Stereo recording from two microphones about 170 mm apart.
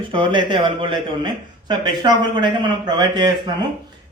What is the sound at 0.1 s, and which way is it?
Speech, 30° right (ahead or behind).